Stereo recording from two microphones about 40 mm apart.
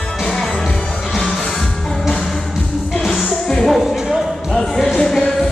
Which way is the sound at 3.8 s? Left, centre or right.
Centre.